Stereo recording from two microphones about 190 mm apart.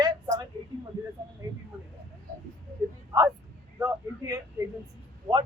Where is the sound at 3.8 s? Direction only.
15° right (ahead or behind).